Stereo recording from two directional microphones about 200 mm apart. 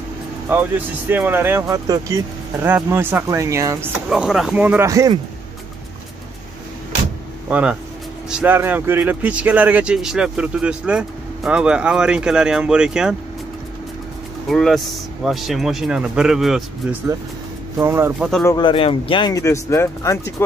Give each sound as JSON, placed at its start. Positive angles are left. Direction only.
{"t": 0.5, "sound": "speech", "side_deg": -10}
{"t": 4.1, "sound": "speech", "side_deg": -5}
{"t": 7.4, "sound": "speech", "side_deg": -5}
{"t": 14.5, "sound": "speech", "side_deg": 0}
{"t": 17.7, "sound": "speech", "side_deg": -15}
{"t": 18.4, "sound": "speech", "side_deg": 20}